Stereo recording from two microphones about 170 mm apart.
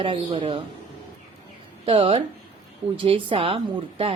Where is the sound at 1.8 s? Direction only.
35° right (ahead or behind).